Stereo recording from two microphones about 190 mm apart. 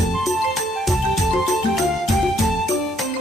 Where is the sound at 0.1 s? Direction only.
Centre (ahead or behind).